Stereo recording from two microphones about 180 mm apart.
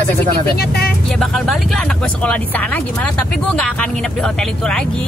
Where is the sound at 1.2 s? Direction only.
Centre (ahead or behind).